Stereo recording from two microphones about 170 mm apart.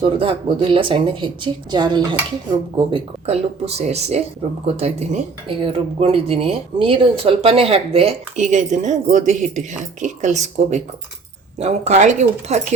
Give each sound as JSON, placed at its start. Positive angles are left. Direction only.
{"t": 0.0, "sound": "speech", "side_deg": -30}